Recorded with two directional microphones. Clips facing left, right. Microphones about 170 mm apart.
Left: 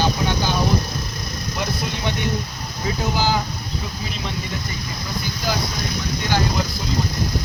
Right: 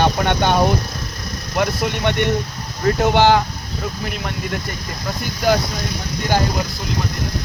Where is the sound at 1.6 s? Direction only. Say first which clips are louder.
Right 7 dB; 70° right (ahead or behind).